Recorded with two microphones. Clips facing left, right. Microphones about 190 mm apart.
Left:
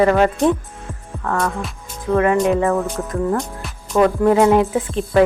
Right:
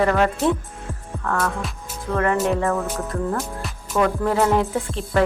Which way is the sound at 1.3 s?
15° left (ahead or behind).